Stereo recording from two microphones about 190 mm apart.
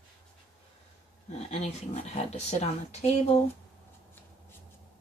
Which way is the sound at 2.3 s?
35° left (ahead or behind).